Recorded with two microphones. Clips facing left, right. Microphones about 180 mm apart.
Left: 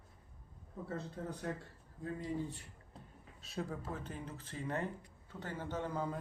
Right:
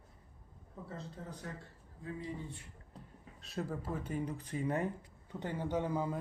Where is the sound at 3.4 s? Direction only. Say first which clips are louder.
Right 2 dB; centre (ahead or behind).